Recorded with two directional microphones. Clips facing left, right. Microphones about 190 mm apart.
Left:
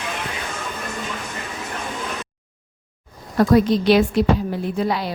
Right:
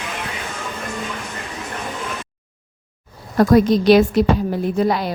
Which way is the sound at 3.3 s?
45° right (ahead or behind).